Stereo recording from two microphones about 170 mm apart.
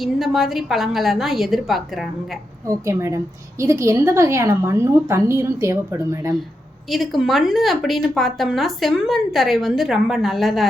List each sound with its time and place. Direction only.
0.0 s a woman's voice: centre (ahead or behind)
2.6 s a woman's voice: 15° right (ahead or behind)
6.9 s a woman's voice: centre (ahead or behind)